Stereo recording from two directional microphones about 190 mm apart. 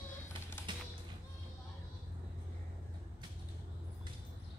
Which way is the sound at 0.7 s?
25° right (ahead or behind).